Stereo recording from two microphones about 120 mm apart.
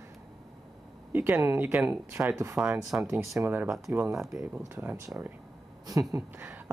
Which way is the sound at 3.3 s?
20° right (ahead or behind).